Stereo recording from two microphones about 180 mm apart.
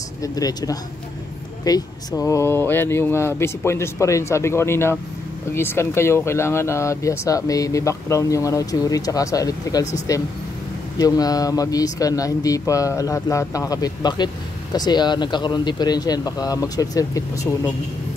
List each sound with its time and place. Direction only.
0.2 s speech: 20° left (ahead or behind)
11.0 s speech: 20° left (ahead or behind)